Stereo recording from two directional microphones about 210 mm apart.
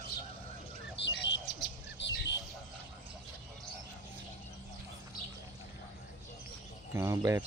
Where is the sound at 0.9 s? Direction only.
60° left (ahead or behind).